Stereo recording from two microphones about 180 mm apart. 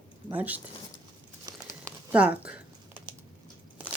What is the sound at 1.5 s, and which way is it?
Crumpling, 20° right (ahead or behind).